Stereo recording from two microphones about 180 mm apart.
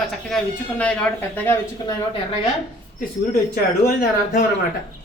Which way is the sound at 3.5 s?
55° left (ahead or behind).